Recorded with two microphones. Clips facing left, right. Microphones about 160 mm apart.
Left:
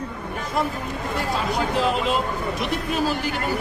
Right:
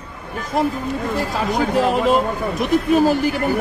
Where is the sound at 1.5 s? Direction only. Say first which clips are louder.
Right 5 dB; 50° right (ahead or behind).